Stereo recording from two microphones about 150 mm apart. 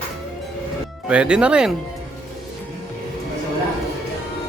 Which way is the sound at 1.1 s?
5° right (ahead or behind).